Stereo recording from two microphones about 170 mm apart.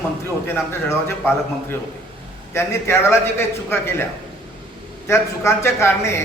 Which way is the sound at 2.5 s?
15° left (ahead or behind).